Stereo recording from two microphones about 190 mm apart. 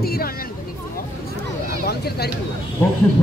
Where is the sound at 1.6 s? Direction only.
55° left (ahead or behind).